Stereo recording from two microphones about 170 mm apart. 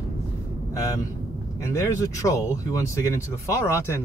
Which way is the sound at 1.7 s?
15° left (ahead or behind).